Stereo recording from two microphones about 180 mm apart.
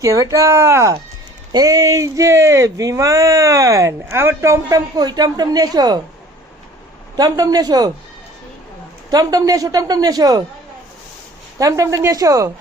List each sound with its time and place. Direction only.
0.0 s speech: 20° right (ahead or behind)
7.2 s speech: 20° right (ahead or behind)
9.0 s speech: 20° right (ahead or behind)
11.5 s speech: 20° right (ahead or behind)